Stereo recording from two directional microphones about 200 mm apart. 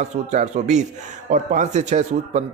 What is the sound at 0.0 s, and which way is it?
Speech, 35° right (ahead or behind).